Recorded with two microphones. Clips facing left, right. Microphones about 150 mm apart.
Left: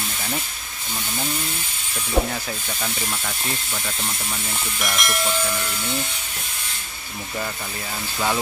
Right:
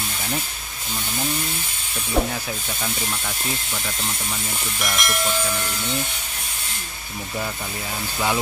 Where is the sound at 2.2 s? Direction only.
5° left (ahead or behind).